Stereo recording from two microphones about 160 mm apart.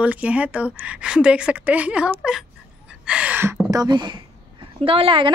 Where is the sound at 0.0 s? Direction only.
10° right (ahead or behind).